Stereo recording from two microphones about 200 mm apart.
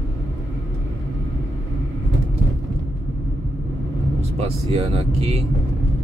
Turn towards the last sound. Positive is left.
turn(degrees=-30)  # may be behind; listen again after turning